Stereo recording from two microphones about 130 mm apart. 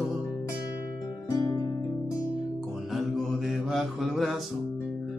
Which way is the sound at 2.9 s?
Centre (ahead or behind).